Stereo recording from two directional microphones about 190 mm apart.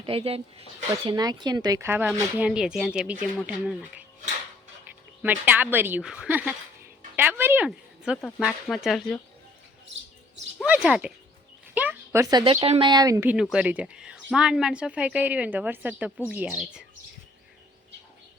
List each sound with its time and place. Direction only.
0.0 s speech: 30° right (ahead or behind)
1.1 s speech: 20° right (ahead or behind); by 4.0 s 5° right (ahead or behind)
5.2 s speech: 10° right (ahead or behind)
10.7 s speech: 5° right (ahead or behind)
13.3 s speech: 5° right (ahead or behind)